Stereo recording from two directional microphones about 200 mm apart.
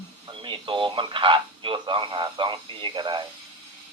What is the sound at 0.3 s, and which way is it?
Speech, 25° right (ahead or behind).